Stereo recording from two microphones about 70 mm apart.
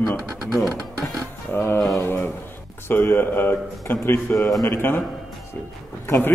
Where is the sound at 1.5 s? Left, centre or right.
Left.